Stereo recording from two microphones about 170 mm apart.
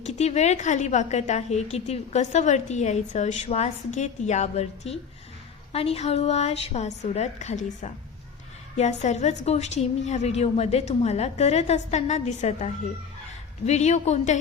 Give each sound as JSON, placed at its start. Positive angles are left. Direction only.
{"t": 0.0, "sound": "a woman's voice", "side_deg": 40}